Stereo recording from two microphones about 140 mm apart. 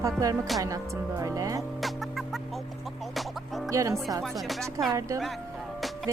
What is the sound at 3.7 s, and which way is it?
Speech, 25° right (ahead or behind).